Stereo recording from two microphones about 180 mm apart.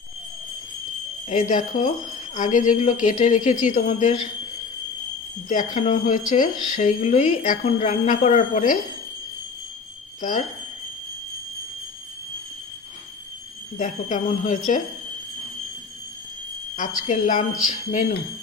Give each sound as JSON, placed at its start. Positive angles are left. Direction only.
{"t": 1.3, "sound": "speech", "side_deg": 40}
{"t": 5.5, "sound": "speech", "side_deg": 45}
{"t": 10.2, "sound": "speech", "side_deg": 45}
{"t": 13.7, "sound": "speech", "side_deg": 40}
{"t": 16.7, "sound": "speech", "side_deg": 45}